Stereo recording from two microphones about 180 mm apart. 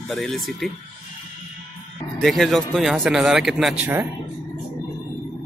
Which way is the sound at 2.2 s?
Centre (ahead or behind).